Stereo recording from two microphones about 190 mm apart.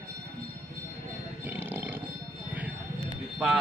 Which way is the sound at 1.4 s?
10° right (ahead or behind).